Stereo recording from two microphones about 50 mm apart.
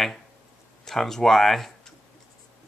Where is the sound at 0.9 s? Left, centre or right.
Centre.